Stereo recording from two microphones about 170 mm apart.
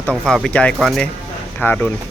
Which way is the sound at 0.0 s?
5° left (ahead or behind).